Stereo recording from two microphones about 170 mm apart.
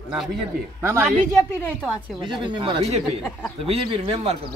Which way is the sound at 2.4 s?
30° right (ahead or behind).